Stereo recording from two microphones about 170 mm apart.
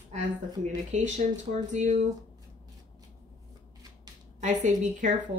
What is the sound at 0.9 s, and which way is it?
A woman's voice, 45° right (ahead or behind).